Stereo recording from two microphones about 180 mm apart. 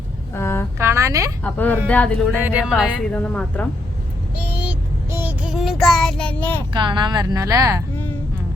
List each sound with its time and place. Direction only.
0.3 s a sound: 15° left (ahead or behind)
0.8 s a sound: 15° right (ahead or behind)
1.5 s a woman's voice: 10° left (ahead or behind)
2.4 s a woman's voice: 5° right (ahead or behind)
3.1 s a woman's voice: 5° left (ahead or behind)
5.1 s child singing: 10° right (ahead or behind); by 6.6 s 5° left (ahead or behind)
6.7 s speech: 25° right (ahead or behind)